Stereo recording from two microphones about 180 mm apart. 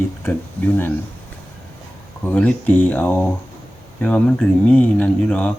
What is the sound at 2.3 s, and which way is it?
Speech, 10° left (ahead or behind).